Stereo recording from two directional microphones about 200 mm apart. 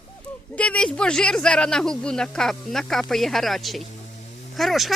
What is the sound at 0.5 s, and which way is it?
Speech, 5° left (ahead or behind).